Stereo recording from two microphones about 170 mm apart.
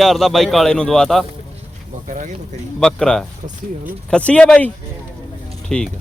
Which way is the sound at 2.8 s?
5° left (ahead or behind).